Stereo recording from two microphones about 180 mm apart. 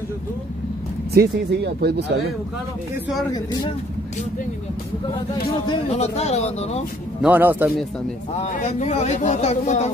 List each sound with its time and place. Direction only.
1.1 s speech: 65° right (ahead or behind)
5.7 s speech: 35° left (ahead or behind)
7.2 s speech: 10° right (ahead or behind)
8.4 s speech: 40° left (ahead or behind)